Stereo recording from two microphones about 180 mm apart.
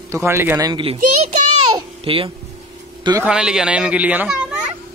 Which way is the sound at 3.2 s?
5° right (ahead or behind).